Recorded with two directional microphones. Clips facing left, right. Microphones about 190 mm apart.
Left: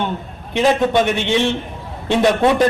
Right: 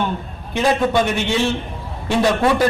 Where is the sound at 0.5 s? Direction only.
20° left (ahead or behind).